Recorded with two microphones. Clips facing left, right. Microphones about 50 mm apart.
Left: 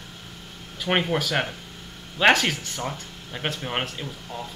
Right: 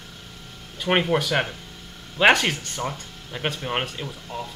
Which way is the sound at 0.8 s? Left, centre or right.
Centre.